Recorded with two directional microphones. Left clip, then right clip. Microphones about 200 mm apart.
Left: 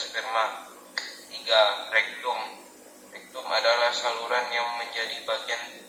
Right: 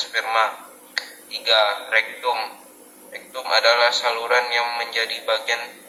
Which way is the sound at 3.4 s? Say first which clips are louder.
Right 6 dB; 30° right (ahead or behind).